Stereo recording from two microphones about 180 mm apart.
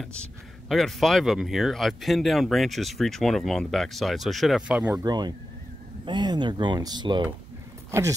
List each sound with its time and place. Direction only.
0.0 s speech: 5° left (ahead or behind)
4.9 s speech: 20° right (ahead or behind)
7.9 s speech: 15° right (ahead or behind)